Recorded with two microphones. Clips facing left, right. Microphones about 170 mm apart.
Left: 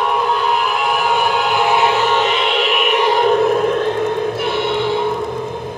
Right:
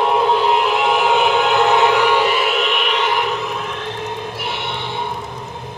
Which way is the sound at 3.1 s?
50° left (ahead or behind).